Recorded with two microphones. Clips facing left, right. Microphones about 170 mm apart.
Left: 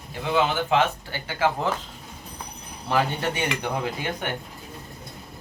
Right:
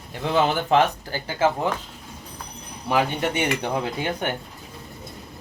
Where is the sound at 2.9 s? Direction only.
20° right (ahead or behind).